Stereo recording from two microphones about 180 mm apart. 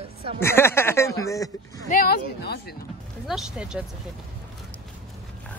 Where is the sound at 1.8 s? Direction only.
50° left (ahead or behind).